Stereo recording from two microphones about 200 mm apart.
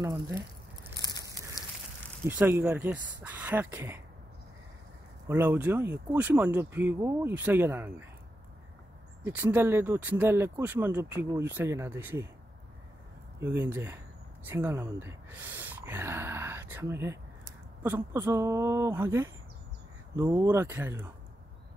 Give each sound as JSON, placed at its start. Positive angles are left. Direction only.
{"t": 0.0, "sound": "speech", "side_deg": -10}
{"t": 1.0, "sound": "sheep", "side_deg": 20}
{"t": 2.2, "sound": "speech", "side_deg": -10}
{"t": 5.3, "sound": "speech", "side_deg": -10}
{"t": 9.2, "sound": "speech", "side_deg": -10}
{"t": 13.4, "sound": "speech", "side_deg": -10}